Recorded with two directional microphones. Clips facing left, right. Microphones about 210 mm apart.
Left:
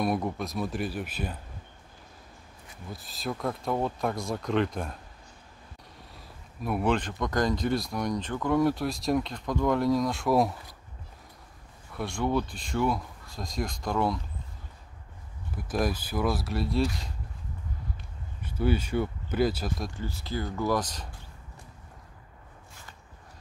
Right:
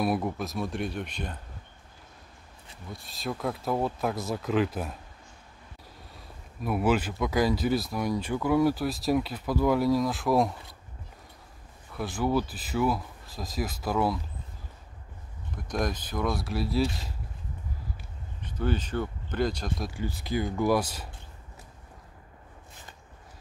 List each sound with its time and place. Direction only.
0.0 s speech: 5° right (ahead or behind)
2.9 s speech: centre (ahead or behind)
6.1 s speech: centre (ahead or behind)
11.9 s speech: centre (ahead or behind)
15.5 s speech: 5° left (ahead or behind)
18.4 s speech: 10° left (ahead or behind)
19.9 s speech: 15° right (ahead or behind)